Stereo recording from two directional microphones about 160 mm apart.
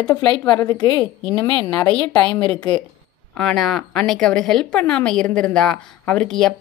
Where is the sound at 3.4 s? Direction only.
Centre (ahead or behind).